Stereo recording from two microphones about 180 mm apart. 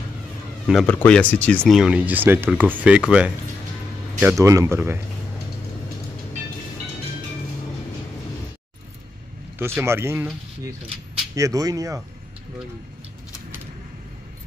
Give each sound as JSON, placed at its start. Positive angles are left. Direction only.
{"t": 0.7, "sound": "speech", "side_deg": 5}
{"t": 9.8, "sound": "speech", "side_deg": -15}
{"t": 11.3, "sound": "speech", "side_deg": -20}